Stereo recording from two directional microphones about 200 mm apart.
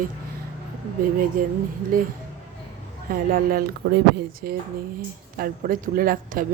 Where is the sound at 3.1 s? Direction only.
45° right (ahead or behind).